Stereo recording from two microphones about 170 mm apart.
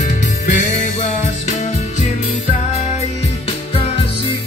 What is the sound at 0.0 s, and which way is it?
Music, 50° left (ahead or behind).